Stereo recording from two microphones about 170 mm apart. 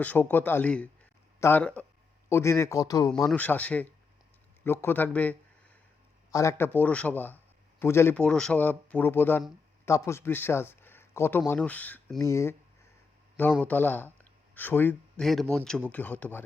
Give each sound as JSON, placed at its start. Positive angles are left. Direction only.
{"t": 0.0, "sound": "a man's voice", "side_deg": 10}
{"t": 3.2, "sound": "speech", "side_deg": 10}
{"t": 13.6, "sound": "speech", "side_deg": 10}